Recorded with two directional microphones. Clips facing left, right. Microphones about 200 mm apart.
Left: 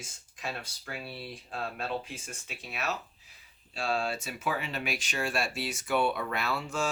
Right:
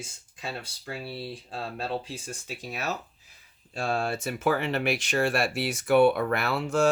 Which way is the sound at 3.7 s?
50° right (ahead or behind).